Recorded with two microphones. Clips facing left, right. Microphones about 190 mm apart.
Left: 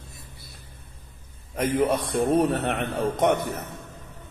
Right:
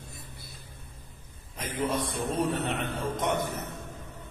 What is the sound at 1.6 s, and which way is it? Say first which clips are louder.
A man's voice: left 7 dB; 60° left (ahead or behind).